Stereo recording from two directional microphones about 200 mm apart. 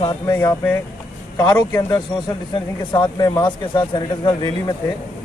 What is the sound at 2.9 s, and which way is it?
Speech, 20° left (ahead or behind).